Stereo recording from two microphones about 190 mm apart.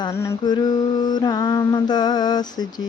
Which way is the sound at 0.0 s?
15° left (ahead or behind).